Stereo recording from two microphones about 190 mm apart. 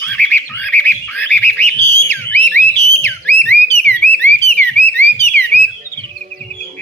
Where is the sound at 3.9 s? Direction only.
10° left (ahead or behind).